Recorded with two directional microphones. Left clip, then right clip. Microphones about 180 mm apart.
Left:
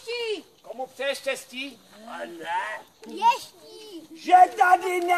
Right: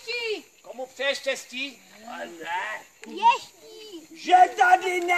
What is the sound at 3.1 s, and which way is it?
Children playing, 55° left (ahead or behind).